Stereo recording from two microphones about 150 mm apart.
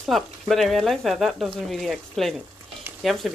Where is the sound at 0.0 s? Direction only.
Centre (ahead or behind).